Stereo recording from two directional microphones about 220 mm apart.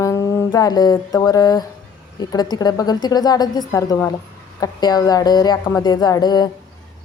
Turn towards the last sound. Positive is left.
turn(degrees=20)  # may be behind; listen again after turning